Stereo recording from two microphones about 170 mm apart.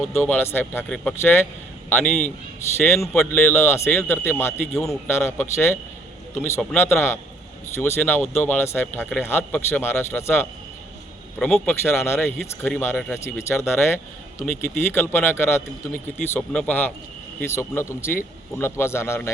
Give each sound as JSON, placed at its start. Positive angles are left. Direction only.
{"t": 0.2, "sound": "speech", "side_deg": 10}